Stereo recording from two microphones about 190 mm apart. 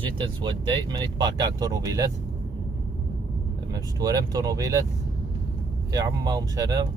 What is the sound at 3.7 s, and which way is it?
Speech, 20° right (ahead or behind).